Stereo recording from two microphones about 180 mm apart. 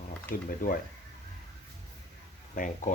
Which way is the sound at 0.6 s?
50° left (ahead or behind).